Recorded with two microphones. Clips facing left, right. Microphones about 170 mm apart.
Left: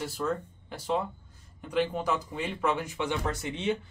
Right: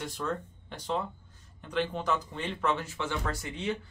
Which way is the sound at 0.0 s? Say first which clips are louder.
Left 3 dB; 5° left (ahead or behind).